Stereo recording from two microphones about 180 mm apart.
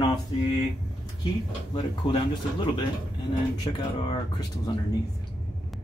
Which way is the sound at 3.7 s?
25° left (ahead or behind).